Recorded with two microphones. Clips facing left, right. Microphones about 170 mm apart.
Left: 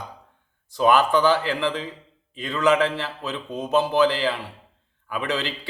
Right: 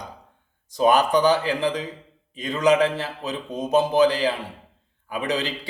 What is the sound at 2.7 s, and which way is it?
Speech, 45° right (ahead or behind).